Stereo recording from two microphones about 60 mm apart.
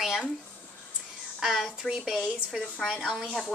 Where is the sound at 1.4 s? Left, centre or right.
Centre.